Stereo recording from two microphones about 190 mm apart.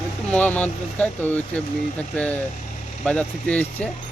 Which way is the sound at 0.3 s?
5° left (ahead or behind).